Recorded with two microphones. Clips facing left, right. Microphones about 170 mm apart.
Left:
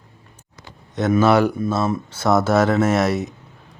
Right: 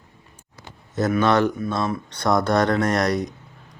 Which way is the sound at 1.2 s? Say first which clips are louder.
Left 4 dB; 10° left (ahead or behind).